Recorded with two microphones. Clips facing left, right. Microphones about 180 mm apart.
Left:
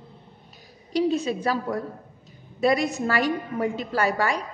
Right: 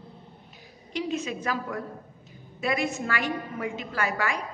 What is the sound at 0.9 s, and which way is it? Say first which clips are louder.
A woman's voice: left 7 dB; 35° left (ahead or behind).